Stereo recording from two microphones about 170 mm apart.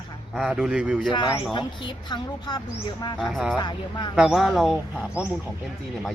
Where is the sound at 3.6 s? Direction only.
25° left (ahead or behind).